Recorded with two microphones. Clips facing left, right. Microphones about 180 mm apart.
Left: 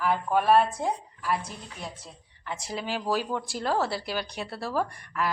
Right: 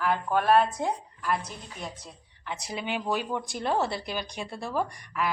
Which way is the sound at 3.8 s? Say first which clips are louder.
Left 1 dB; 5° left (ahead or behind).